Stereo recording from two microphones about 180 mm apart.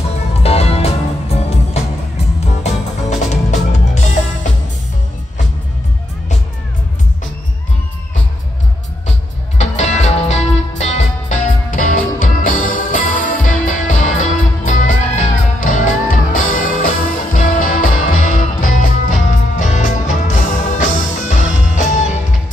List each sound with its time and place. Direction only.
0.3 s music: 35° left (ahead or behind)
9.6 s music: 40° left (ahead or behind)